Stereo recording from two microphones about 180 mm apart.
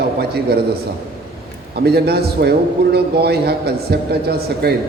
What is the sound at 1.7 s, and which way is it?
A man's voice, 60° right (ahead or behind).